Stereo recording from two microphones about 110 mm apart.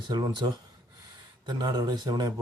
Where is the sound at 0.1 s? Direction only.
40° right (ahead or behind).